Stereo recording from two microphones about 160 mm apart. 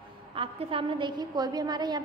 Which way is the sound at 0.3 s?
35° right (ahead or behind).